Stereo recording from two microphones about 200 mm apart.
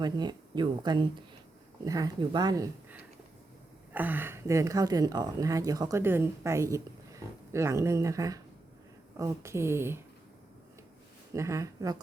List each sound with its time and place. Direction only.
0.0 s a woman's voice: 20° right (ahead or behind)
3.9 s a woman's voice: 10° right (ahead or behind)
11.3 s a woman's voice: 15° right (ahead or behind)